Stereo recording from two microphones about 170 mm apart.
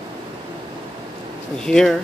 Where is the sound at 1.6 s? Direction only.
5° left (ahead or behind).